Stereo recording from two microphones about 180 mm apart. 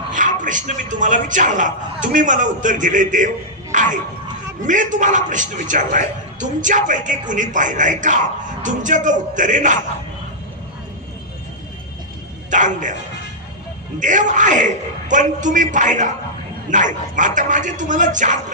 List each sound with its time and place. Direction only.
0.1 s a man's voice: 45° right (ahead or behind)
3.7 s music: 45° right (ahead or behind)
4.6 s a man's voice: 45° right (ahead or behind)
12.4 s a man's voice: 45° right (ahead or behind)
13.9 s a man's voice: 45° right (ahead or behind)